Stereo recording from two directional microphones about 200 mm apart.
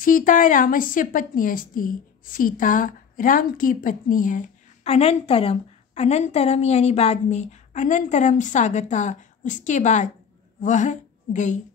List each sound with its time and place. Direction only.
0.0 s a woman's voice: 45° left (ahead or behind)